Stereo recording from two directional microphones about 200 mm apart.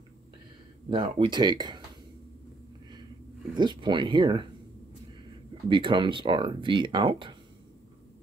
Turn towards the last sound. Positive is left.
turn(degrees=-25)  # may be behind; listen again after turning